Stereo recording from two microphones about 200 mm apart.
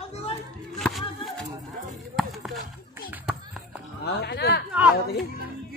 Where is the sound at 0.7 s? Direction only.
Centre (ahead or behind).